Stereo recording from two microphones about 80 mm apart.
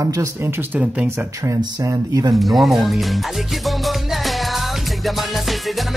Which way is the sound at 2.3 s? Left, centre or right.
Centre.